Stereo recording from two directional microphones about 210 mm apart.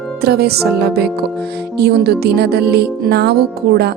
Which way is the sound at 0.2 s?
50° right (ahead or behind).